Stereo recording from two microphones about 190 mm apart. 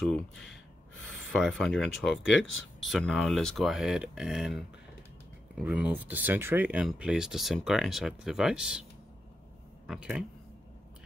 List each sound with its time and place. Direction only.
0.0 s speech: centre (ahead or behind)
2.4 s speech: 90° left
2.9 s speech: centre (ahead or behind)
9.8 s speech: 5° right (ahead or behind)